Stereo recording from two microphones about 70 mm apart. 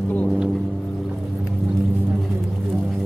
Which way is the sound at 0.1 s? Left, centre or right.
Centre.